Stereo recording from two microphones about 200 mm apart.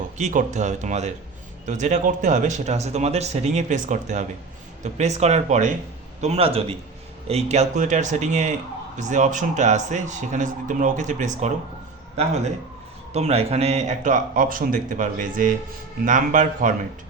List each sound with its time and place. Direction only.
0.2 s a man's voice: 35° right (ahead or behind)
13.1 s speech: 30° right (ahead or behind)